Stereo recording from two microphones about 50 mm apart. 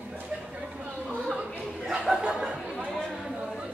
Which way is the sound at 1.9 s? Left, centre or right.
Centre.